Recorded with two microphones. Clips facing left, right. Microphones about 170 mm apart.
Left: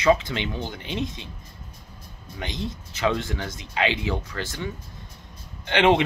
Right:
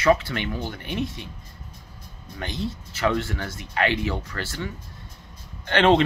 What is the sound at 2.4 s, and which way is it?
Speech, 15° left (ahead or behind).